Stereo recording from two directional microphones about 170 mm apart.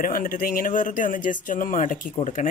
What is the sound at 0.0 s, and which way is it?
Speech, 55° left (ahead or behind).